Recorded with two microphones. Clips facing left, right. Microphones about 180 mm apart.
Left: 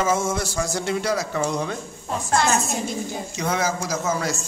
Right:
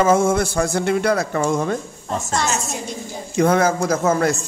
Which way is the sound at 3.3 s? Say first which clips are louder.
Right 9 dB; 55° right (ahead or behind).